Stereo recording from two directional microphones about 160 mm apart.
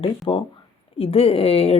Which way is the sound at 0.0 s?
35° left (ahead or behind).